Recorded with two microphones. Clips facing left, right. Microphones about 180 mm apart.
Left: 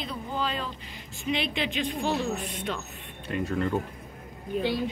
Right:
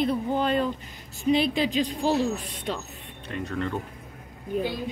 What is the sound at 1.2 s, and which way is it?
Speech, 40° right (ahead or behind).